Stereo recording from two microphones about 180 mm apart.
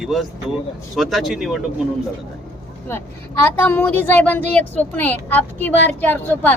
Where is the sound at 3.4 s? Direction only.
10° left (ahead or behind).